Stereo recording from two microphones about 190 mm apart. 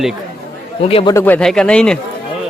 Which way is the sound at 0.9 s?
30° left (ahead or behind).